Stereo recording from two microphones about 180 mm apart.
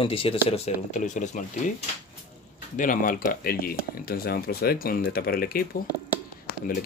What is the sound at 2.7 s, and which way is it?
Speech, 45° left (ahead or behind).